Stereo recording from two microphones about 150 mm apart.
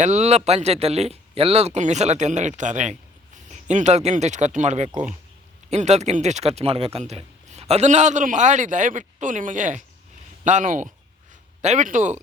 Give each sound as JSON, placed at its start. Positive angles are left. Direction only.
{"t": 0.0, "sound": "speech", "side_deg": -50}